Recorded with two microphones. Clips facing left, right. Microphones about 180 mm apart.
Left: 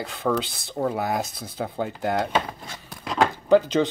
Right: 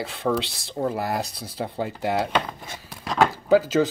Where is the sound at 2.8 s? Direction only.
Centre (ahead or behind).